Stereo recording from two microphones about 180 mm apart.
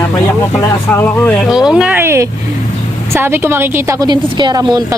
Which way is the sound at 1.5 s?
5° right (ahead or behind).